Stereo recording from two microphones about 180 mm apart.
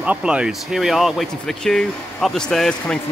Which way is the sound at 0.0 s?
5° right (ahead or behind).